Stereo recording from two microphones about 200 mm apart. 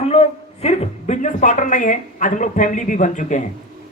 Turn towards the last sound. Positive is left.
turn(degrees=40)  # may be behind; listen again after turning